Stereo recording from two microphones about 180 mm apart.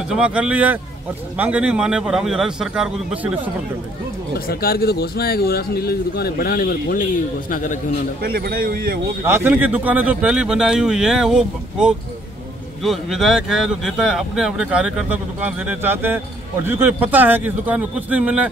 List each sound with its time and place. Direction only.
0.1 s a man's voice: 5° right (ahead or behind)
4.5 s speech: 60° left (ahead or behind)
8.2 s a man's voice: 55° right (ahead or behind)
9.2 s a man's voice: 10° right (ahead or behind)